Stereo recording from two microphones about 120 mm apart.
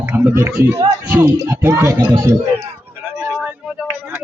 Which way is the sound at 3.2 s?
20° right (ahead or behind).